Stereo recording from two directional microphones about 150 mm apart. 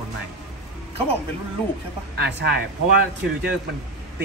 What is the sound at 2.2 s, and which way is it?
Speech, 90° right.